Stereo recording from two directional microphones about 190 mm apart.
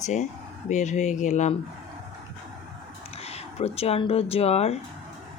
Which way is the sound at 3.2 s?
35° left (ahead or behind).